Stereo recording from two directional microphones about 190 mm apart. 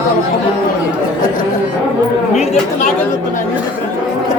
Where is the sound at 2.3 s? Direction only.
35° left (ahead or behind).